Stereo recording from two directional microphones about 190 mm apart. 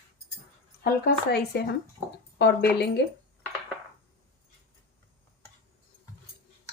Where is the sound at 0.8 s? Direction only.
55° left (ahead or behind).